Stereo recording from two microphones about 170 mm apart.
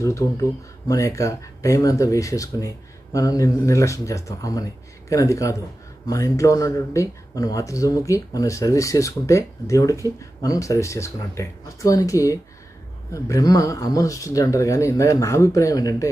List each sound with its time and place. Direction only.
0.0 s speech: 20° left (ahead or behind)